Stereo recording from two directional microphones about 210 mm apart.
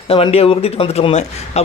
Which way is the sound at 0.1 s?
25° left (ahead or behind).